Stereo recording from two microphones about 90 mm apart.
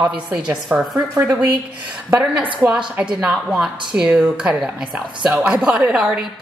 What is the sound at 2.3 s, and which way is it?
A woman's voice, 10° right (ahead or behind).